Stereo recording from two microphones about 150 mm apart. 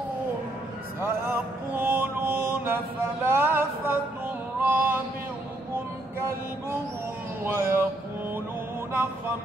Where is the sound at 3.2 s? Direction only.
15° right (ahead or behind).